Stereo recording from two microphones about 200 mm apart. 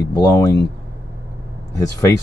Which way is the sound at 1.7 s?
15° left (ahead or behind).